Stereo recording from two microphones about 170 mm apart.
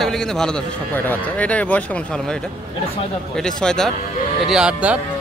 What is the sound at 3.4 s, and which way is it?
A man's voice, 5° left (ahead or behind).